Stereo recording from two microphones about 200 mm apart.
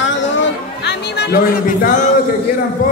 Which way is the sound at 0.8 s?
55° left (ahead or behind).